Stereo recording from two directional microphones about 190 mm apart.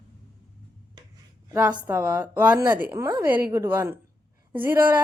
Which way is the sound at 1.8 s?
10° right (ahead or behind).